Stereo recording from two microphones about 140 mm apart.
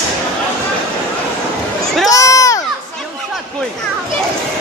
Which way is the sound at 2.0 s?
25° left (ahead or behind).